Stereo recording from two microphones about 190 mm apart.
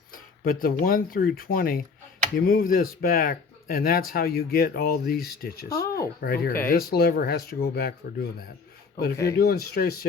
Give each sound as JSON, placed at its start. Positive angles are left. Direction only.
{"t": 0.1, "sound": "speech", "side_deg": 50}